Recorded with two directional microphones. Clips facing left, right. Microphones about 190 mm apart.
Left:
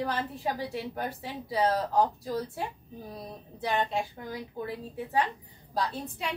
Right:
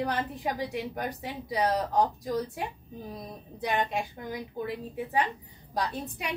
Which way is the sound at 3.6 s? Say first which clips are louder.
Even; 15° right (ahead or behind).